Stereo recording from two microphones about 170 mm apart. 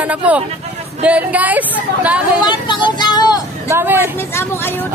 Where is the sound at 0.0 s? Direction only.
10° right (ahead or behind).